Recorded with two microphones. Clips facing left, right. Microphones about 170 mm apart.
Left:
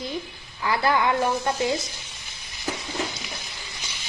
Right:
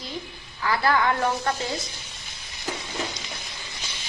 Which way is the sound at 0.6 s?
20° left (ahead or behind).